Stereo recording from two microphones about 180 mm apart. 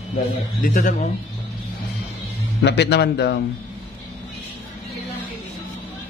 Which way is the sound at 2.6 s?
70° left (ahead or behind).